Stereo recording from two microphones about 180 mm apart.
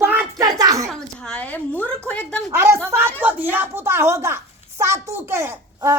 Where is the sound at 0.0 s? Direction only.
10° right (ahead or behind).